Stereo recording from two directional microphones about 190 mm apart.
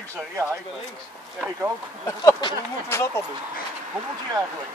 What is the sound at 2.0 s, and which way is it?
Speech, 15° left (ahead or behind).